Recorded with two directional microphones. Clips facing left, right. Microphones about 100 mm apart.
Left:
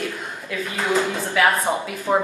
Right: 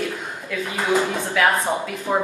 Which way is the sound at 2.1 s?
20° left (ahead or behind).